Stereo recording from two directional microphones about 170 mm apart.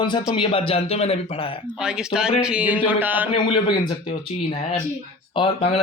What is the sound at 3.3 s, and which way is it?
A man's voice, 30° left (ahead or behind).